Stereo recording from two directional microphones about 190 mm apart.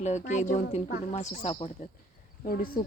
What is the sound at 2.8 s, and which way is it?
Speech, 50° left (ahead or behind).